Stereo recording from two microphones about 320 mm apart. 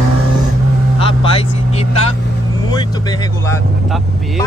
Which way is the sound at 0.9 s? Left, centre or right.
Centre.